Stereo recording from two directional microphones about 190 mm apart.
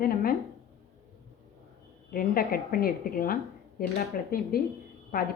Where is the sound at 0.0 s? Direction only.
50° left (ahead or behind).